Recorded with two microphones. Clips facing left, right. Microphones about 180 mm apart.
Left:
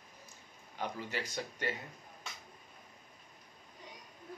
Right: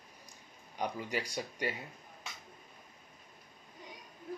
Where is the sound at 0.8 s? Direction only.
15° right (ahead or behind).